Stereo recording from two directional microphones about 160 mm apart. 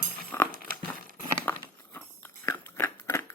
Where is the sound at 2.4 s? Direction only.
15° left (ahead or behind).